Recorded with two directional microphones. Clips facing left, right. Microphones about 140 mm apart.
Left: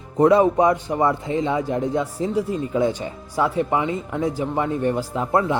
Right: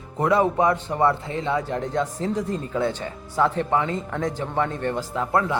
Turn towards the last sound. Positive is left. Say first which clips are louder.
# left 2 dB
turn(degrees=20)  # may be behind; listen again after turning